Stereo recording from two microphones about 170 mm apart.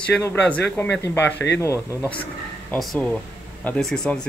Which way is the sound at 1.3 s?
90° left.